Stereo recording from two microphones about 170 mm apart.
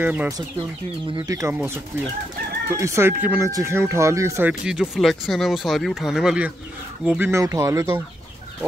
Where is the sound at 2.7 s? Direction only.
15° right (ahead or behind).